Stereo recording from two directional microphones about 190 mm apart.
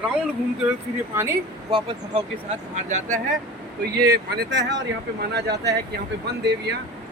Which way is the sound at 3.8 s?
60° right (ahead or behind).